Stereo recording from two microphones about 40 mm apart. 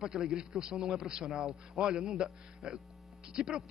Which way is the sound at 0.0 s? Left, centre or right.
Centre.